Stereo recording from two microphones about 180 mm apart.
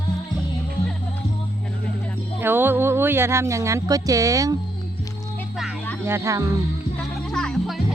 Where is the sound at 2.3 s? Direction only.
10° right (ahead or behind).